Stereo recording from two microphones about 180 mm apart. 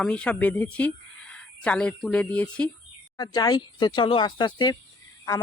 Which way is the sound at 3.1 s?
20° left (ahead or behind).